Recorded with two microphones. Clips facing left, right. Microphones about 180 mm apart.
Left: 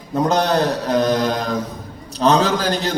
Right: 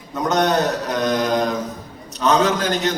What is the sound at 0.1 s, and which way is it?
Mantra, 30° left (ahead or behind).